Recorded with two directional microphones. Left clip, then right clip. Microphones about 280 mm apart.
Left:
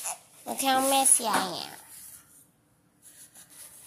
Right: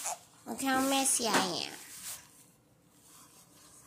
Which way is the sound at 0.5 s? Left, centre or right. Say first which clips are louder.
Left 6 dB; left.